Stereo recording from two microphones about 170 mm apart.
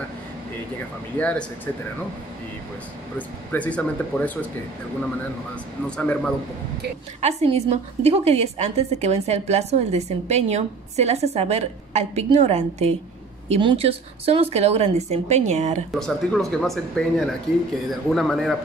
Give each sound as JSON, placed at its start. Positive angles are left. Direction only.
{"t": 1.1, "sound": "speech", "side_deg": 10}
{"t": 3.2, "sound": "speech", "side_deg": 10}
{"t": 5.9, "sound": "speech", "side_deg": 5}
{"t": 7.2, "sound": "a woman's voice", "side_deg": -40}
{"t": 15.9, "sound": "speech", "side_deg": 0}